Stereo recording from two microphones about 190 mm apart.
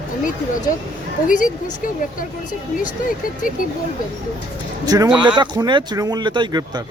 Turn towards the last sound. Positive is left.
turn(degrees=-25)  # may be behind; listen again after turning